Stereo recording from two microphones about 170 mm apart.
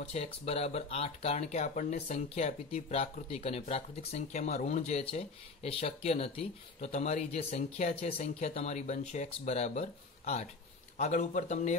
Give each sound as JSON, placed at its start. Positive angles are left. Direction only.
{"t": 0.0, "sound": "a man's voice", "side_deg": 40}